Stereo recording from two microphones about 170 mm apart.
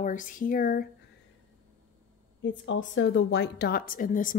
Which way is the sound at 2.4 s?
90° left.